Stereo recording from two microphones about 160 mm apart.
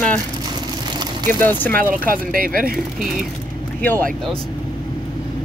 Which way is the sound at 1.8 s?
60° right (ahead or behind).